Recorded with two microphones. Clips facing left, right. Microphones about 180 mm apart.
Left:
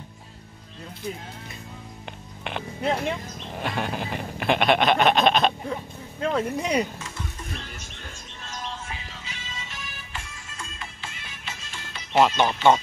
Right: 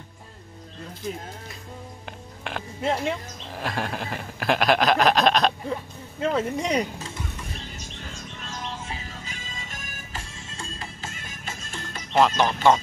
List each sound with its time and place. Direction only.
2.4 s speech: centre (ahead or behind)
8.8 s music: 40° right (ahead or behind)
10.3 s music: 30° right (ahead or behind); by 12.0 s 45° right (ahead or behind)
12.1 s speech: 5° left (ahead or behind)